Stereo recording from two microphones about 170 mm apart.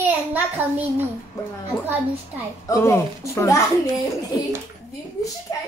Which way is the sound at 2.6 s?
15° left (ahead or behind).